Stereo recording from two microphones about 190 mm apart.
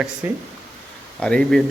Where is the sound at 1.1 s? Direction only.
5° left (ahead or behind).